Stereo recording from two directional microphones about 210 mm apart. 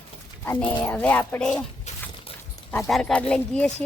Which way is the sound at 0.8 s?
10° left (ahead or behind).